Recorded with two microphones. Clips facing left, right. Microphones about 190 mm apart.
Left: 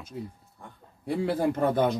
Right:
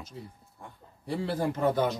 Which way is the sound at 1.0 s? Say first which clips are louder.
Left 4 dB; 55° left (ahead or behind).